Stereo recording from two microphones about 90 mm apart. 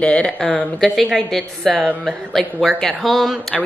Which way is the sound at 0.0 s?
10° left (ahead or behind).